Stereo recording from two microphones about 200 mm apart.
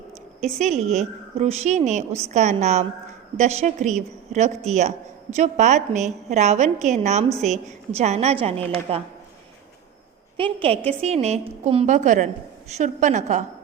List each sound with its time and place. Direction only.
0.6 s a woman's voice: 35° right (ahead or behind)
10.3 s a woman's voice: 25° right (ahead or behind)